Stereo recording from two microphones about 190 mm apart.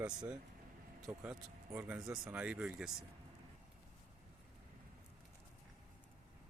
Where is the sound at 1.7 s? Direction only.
5° right (ahead or behind).